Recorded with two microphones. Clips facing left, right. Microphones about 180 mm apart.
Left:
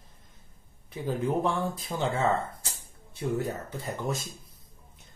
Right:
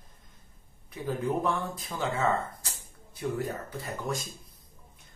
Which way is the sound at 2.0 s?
25° left (ahead or behind).